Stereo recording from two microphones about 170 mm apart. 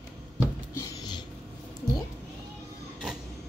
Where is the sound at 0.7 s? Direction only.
25° left (ahead or behind).